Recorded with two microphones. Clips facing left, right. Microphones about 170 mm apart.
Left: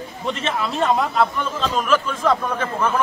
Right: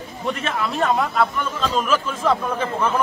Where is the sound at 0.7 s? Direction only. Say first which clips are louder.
Left 1 dB; centre (ahead or behind).